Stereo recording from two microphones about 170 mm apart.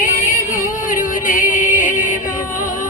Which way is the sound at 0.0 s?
50° left (ahead or behind).